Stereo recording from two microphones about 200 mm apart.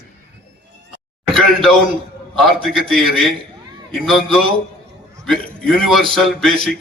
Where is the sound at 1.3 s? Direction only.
Centre (ahead or behind).